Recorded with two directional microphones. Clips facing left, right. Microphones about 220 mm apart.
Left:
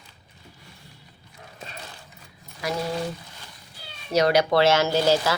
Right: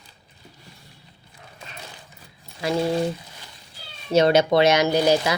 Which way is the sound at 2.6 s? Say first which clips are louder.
Right 5 dB; 25° right (ahead or behind).